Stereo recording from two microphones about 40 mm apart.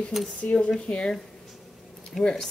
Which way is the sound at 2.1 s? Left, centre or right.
Centre.